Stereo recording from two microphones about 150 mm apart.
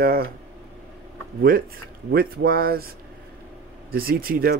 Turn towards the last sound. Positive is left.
turn(degrees=-80)